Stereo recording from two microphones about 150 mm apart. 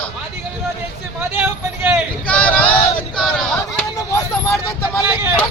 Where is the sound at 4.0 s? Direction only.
20° left (ahead or behind).